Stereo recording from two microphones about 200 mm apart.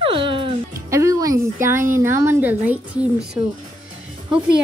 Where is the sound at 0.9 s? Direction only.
15° right (ahead or behind).